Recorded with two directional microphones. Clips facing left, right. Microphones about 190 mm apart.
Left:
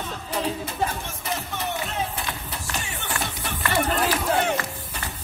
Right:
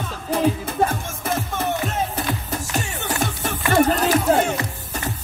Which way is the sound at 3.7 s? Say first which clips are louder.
Right 7 dB; 45° right (ahead or behind).